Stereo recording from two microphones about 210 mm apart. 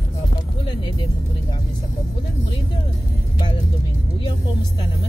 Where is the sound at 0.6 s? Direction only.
20° left (ahead or behind).